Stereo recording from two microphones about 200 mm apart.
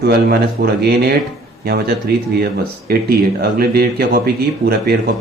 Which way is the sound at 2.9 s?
50° right (ahead or behind).